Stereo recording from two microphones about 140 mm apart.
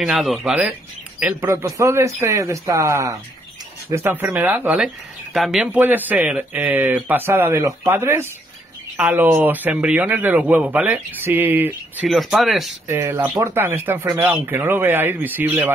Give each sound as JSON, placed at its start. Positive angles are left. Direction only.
{"t": 0.0, "sound": "speech", "side_deg": -5}
{"t": 1.2, "sound": "a man's voice", "side_deg": -15}
{"t": 4.7, "sound": "a man's voice", "side_deg": 0}
{"t": 12.1, "sound": "speech", "side_deg": 0}
{"t": 12.8, "sound": "a man's voice", "side_deg": -20}